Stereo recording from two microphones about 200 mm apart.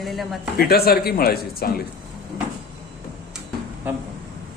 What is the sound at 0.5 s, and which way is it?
Speech, 50° left (ahead or behind).